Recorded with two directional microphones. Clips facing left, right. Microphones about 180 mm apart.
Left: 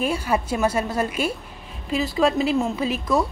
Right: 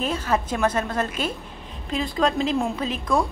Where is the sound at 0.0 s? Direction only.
10° left (ahead or behind).